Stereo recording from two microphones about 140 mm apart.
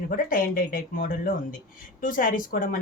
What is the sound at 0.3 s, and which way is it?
Speech, 75° left (ahead or behind).